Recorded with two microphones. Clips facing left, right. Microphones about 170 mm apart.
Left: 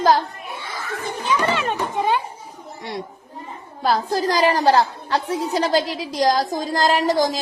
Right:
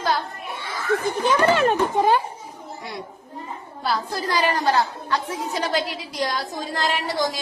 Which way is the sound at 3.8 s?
40° left (ahead or behind).